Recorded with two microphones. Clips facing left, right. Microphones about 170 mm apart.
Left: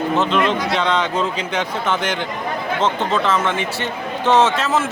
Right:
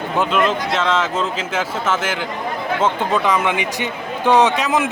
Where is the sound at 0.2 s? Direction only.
5° right (ahead or behind).